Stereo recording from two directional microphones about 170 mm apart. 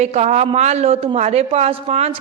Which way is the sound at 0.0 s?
40° right (ahead or behind).